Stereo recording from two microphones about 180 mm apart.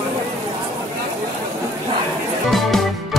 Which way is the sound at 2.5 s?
Centre (ahead or behind).